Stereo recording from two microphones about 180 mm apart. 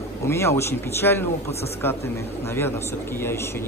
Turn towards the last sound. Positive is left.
turn(degrees=15)  # may be behind; listen again after turning